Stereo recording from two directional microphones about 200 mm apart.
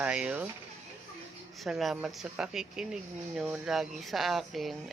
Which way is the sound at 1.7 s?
Centre (ahead or behind).